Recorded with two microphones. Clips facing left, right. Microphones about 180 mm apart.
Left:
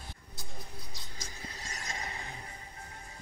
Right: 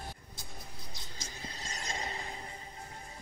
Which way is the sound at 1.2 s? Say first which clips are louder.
Right 1 dB; 30° right (ahead or behind).